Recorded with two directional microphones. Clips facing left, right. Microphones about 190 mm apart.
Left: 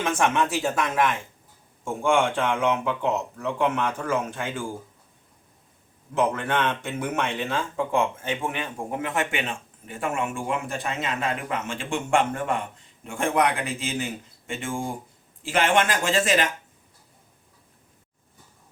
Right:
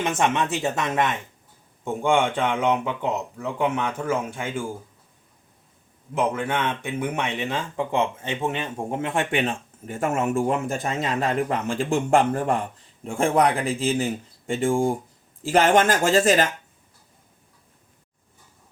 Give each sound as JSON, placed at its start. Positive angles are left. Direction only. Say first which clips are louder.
{"t": 0.0, "sound": "a man's voice", "louder": "even", "side_deg": -20}
{"t": 6.1, "sound": "speech", "louder": "even", "side_deg": -10}